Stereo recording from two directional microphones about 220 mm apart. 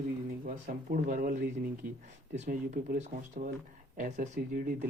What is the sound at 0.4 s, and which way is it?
Speech, 35° right (ahead or behind).